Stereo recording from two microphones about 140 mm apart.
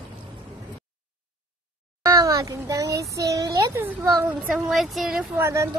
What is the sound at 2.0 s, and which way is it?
Speech, 25° right (ahead or behind).